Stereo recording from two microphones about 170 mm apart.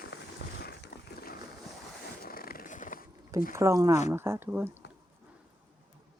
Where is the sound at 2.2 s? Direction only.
60° left (ahead or behind).